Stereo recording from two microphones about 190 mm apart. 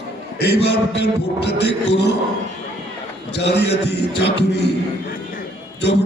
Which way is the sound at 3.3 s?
65° left (ahead or behind).